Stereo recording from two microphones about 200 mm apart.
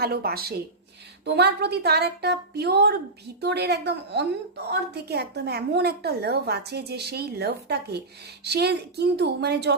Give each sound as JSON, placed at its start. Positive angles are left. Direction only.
{"t": 0.0, "sound": "a woman's voice", "side_deg": -50}